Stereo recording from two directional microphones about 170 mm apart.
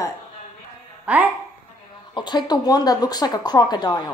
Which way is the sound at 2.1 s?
25° left (ahead or behind).